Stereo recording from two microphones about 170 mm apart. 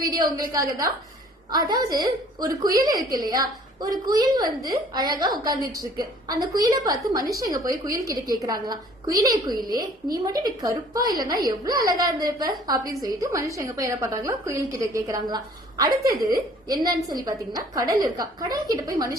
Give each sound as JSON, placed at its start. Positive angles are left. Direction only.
{"t": 0.0, "sound": "a woman's voice", "side_deg": -25}